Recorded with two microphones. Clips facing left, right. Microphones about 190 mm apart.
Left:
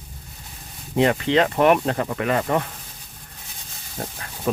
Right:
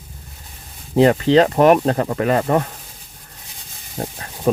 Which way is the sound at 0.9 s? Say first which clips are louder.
Right 6 dB; 35° right (ahead or behind).